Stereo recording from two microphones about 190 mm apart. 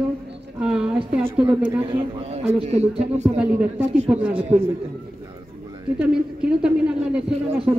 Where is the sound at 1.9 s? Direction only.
35° right (ahead or behind).